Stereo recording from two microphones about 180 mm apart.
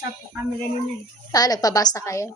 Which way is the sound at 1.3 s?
20° left (ahead or behind).